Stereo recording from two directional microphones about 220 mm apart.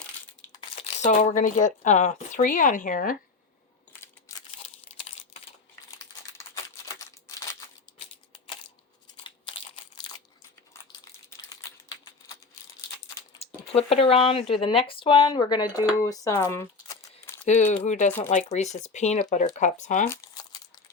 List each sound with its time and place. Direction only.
0.8 s speech: 30° left (ahead or behind)
4.0 s crushing: 15° left (ahead or behind)
4.5 s crumpling: 25° left (ahead or behind)
6.3 s crumpling: 15° left (ahead or behind)
9.1 s crumpling: 25° left (ahead or behind)
13.4 s speech: 25° left (ahead or behind); by 17.4 s 10° left (ahead or behind)
17.7 s speech: 35° left (ahead or behind)
20.1 s crumpling: 15° left (ahead or behind)